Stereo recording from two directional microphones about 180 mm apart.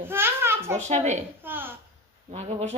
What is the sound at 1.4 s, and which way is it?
Speech, 10° right (ahead or behind).